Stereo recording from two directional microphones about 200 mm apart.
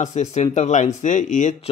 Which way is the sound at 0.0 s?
35° left (ahead or behind).